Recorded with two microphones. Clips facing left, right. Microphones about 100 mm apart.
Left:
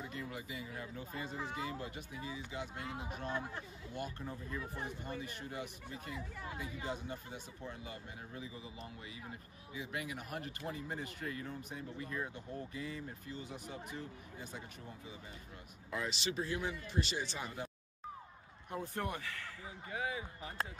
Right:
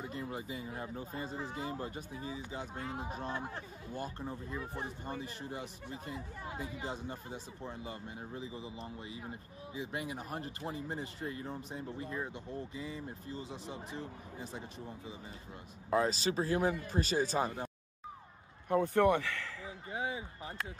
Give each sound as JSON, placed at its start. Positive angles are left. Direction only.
{"t": 0.1, "sound": "speech", "side_deg": -30}
{"t": 15.9, "sound": "speech", "side_deg": -35}
{"t": 18.7, "sound": "a man's voice", "side_deg": -65}
{"t": 19.9, "sound": "speech", "side_deg": -25}